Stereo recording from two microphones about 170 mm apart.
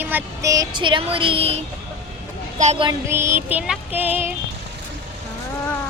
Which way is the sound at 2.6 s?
45° right (ahead or behind).